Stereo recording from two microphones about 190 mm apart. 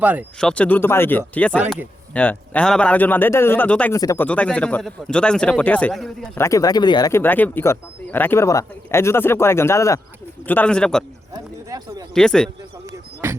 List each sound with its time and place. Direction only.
0.0 s speech: 10° right (ahead or behind)
0.3 s a man's voice: 5° left (ahead or behind)
6.3 s a man's voice: 15° left (ahead or behind)
11.3 s a sound: 20° right (ahead or behind)
12.1 s a man's voice: 5° left (ahead or behind)
13.2 s music: 10° right (ahead or behind)